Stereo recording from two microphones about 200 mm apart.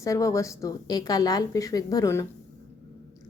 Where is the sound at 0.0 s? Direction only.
15° left (ahead or behind).